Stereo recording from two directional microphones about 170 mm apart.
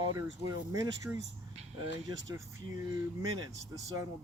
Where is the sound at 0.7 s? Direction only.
20° right (ahead or behind).